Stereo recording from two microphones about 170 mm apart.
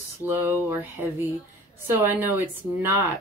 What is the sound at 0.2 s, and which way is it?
Speech, 10° right (ahead or behind).